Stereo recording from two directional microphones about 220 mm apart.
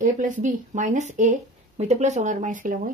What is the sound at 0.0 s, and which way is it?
Speech, 35° right (ahead or behind).